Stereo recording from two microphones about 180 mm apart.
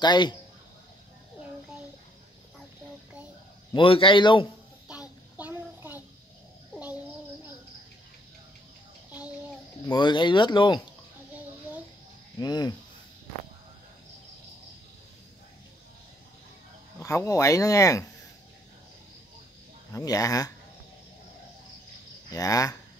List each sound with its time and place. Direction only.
0.0 s speech: 25° left (ahead or behind)
3.7 s speech: 30° left (ahead or behind)
5.4 s a sound: 10° right (ahead or behind)
9.8 s speech: 25° left (ahead or behind)
12.4 s speech: 25° left (ahead or behind)
17.0 s speech: 15° left (ahead or behind)
19.9 s speech: 20° left (ahead or behind)
22.3 s speech: 20° left (ahead or behind)